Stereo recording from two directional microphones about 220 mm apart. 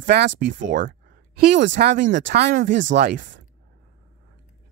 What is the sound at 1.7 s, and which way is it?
Speech, 50° right (ahead or behind).